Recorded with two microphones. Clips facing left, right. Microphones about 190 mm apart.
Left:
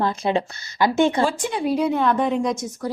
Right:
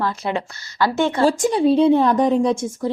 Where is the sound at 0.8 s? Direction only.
15° left (ahead or behind).